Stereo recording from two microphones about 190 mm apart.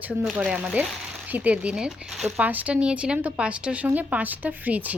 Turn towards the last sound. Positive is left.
turn(degrees=-10)  # may be behind; listen again after turning